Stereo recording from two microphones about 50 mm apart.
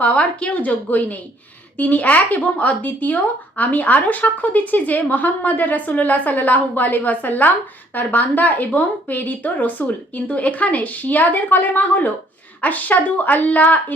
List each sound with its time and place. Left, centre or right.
0.0 s a woman's voice: left